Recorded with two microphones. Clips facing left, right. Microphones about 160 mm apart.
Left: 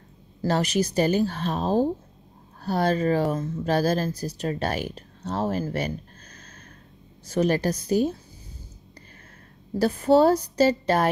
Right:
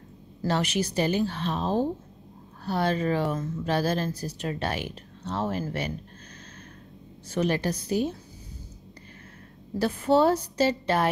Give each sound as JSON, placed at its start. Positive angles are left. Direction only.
{"t": 0.4, "sound": "a woman's voice", "side_deg": 40}
{"t": 7.2, "sound": "a woman's voice", "side_deg": 40}
{"t": 9.8, "sound": "a woman's voice", "side_deg": 40}